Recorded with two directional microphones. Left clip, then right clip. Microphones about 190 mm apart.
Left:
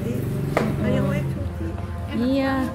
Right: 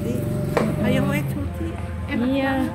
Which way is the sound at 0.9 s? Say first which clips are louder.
Right 2 dB; 50° right (ahead or behind).